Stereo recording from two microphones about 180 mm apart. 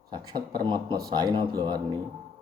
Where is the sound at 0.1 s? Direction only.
20° right (ahead or behind).